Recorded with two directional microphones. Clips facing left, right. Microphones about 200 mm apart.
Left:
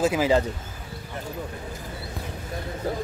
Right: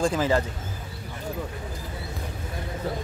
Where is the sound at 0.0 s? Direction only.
10° left (ahead or behind).